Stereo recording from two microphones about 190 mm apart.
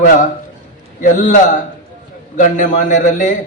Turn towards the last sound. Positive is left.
turn(degrees=40)  # may be behind; listen again after turning